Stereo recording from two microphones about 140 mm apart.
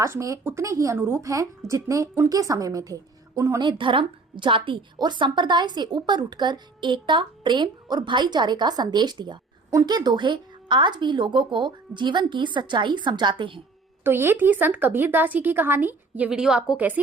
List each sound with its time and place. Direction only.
0.0 s a woman's voice: 20° right (ahead or behind)
3.6 s a woman's voice: 35° right (ahead or behind)
14.0 s speech: 15° right (ahead or behind)